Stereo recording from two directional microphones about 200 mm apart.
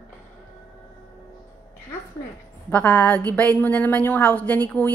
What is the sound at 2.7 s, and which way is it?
A woman's voice, 5° left (ahead or behind).